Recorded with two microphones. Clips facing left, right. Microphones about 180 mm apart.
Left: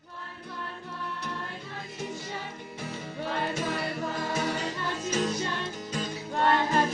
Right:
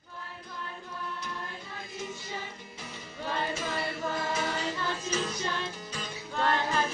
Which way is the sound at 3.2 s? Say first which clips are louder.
Left 2 dB; 60° left (ahead or behind).